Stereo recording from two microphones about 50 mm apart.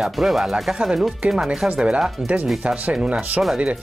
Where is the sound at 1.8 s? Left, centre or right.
Centre.